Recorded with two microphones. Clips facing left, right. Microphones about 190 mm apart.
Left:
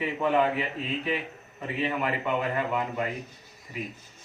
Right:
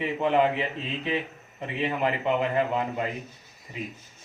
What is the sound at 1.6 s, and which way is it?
A man's voice, 25° right (ahead or behind).